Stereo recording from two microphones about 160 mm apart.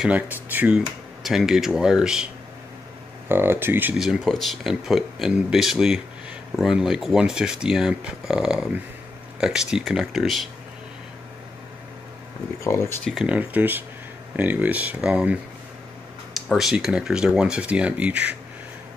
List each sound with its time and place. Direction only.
0.0 s speech: 10° right (ahead or behind)
3.3 s speech: 15° right (ahead or behind)
12.6 s speech: 20° left (ahead or behind)
13.0 s speech: centre (ahead or behind)
16.3 s speech: centre (ahead or behind)